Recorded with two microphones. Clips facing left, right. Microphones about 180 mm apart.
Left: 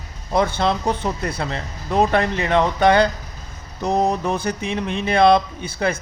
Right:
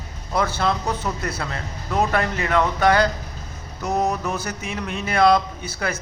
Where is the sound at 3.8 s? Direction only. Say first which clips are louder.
Left 3 dB; 30° left (ahead or behind).